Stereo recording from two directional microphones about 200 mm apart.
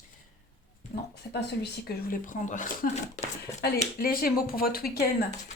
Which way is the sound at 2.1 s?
40° left (ahead or behind).